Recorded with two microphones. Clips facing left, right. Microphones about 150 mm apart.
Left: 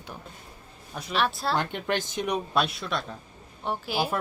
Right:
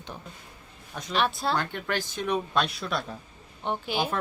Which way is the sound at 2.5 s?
Centre (ahead or behind).